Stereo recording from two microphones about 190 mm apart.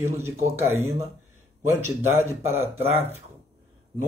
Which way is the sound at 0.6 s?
15° right (ahead or behind).